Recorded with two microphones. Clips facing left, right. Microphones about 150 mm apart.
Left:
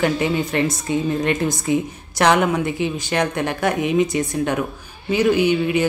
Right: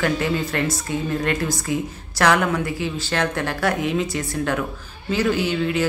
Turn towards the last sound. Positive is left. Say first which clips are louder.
# left 4 dB
turn(degrees=15)  # may be behind; listen again after turning